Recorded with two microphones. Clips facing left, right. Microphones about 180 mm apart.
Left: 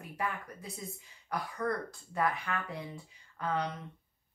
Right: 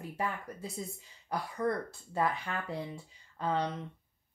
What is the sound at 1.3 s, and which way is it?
Speech, 25° right (ahead or behind).